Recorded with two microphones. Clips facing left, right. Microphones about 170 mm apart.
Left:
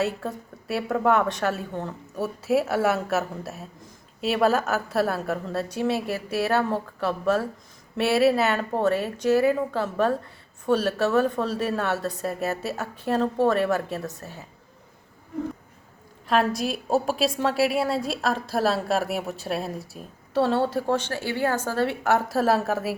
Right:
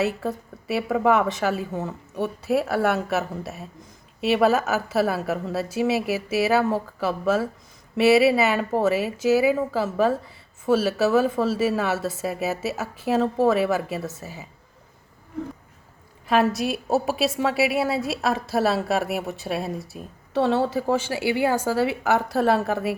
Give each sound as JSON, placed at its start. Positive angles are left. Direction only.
{"t": 0.0, "sound": "a woman's voice", "side_deg": 0}
{"t": 16.2, "sound": "a woman's voice", "side_deg": -5}